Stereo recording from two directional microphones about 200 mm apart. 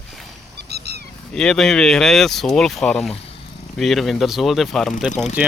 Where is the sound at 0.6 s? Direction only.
55° right (ahead or behind).